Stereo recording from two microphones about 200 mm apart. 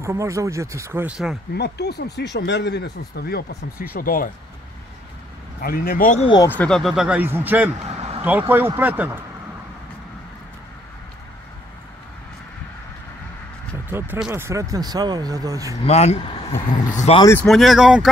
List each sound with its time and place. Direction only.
0.0 s speech: 15° right (ahead or behind)
1.5 s speech: 55° left (ahead or behind)
5.6 s speech: 45° left (ahead or behind)
6.2 s speech: 20° left (ahead or behind)
6.5 s speech: 5° left (ahead or behind)
7.9 s vehicle: 30° right (ahead or behind)
8.2 s speech: 10° right (ahead or behind)
13.8 s speech: 10° right (ahead or behind)
15.8 s speech: 30° left (ahead or behind); by 17.5 s 15° left (ahead or behind)
17.5 s speech: centre (ahead or behind)